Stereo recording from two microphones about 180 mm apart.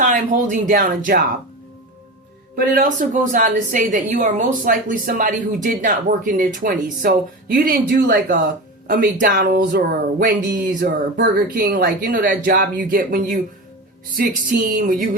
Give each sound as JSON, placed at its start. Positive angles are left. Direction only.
{"t": 0.0, "sound": "a woman's voice", "side_deg": -45}
{"t": 2.7, "sound": "a woman's voice", "side_deg": -50}
{"t": 8.9, "sound": "a woman's voice", "side_deg": -50}
{"t": 10.8, "sound": "a woman's voice", "side_deg": -65}
{"t": 14.7, "sound": "a woman's voice", "side_deg": -50}